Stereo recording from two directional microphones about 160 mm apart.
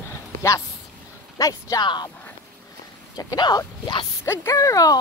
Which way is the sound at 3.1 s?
25° left (ahead or behind).